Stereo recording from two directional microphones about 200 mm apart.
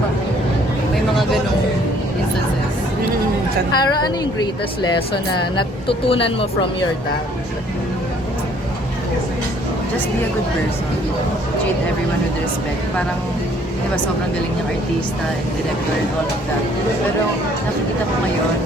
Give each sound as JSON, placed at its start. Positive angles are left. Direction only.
{"t": 3.8, "sound": "a woman's voice", "side_deg": 20}